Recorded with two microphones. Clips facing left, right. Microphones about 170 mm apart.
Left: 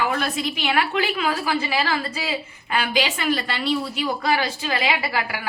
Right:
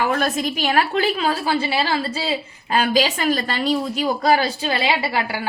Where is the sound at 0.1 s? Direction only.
45° right (ahead or behind).